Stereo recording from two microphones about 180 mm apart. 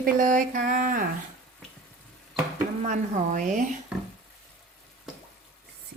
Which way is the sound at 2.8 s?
45° right (ahead or behind).